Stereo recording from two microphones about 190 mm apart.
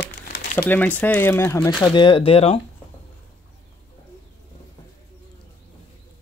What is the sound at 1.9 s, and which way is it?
Speech, 25° left (ahead or behind).